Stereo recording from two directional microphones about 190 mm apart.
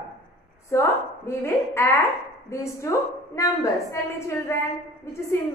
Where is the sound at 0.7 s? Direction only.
15° left (ahead or behind).